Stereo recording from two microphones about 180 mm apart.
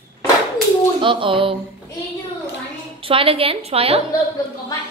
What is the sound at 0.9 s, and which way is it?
Speech, 30° right (ahead or behind).